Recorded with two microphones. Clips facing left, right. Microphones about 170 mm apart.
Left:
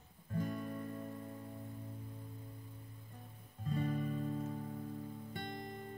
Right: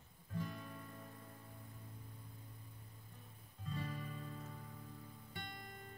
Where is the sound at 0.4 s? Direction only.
50° left (ahead or behind).